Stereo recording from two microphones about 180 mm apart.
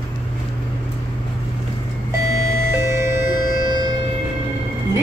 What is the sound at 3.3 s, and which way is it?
Music, 50° left (ahead or behind).